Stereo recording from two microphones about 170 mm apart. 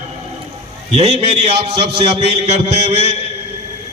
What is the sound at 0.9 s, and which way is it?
A man's voice, 40° right (ahead or behind).